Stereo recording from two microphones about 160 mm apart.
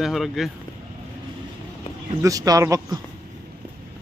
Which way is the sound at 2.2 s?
20° right (ahead or behind).